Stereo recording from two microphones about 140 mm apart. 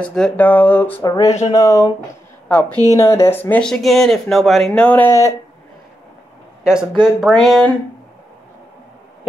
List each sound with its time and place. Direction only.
0.0 s speech: 5° left (ahead or behind)
1.0 s speech: 25° left (ahead or behind)
2.7 s speech: 25° right (ahead or behind)
3.0 s speech: 20° left (ahead or behind)
6.6 s speech: 5° right (ahead or behind)